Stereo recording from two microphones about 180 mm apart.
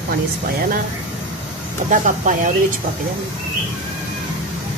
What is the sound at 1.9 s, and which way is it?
Speech, 45° right (ahead or behind).